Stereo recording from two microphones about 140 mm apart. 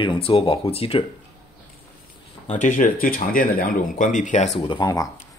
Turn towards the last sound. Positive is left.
turn(degrees=35)  # may be behind; listen again after turning